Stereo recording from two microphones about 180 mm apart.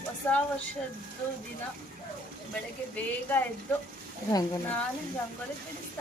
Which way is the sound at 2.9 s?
10° left (ahead or behind).